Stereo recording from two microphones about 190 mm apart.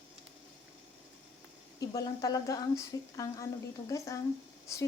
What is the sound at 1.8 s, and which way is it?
A woman's voice, 20° left (ahead or behind).